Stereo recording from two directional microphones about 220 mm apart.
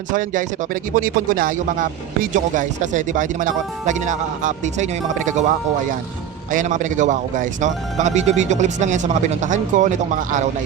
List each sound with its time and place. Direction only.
0.1 s speech: 35° right (ahead or behind)
6.5 s speech: 35° right (ahead or behind)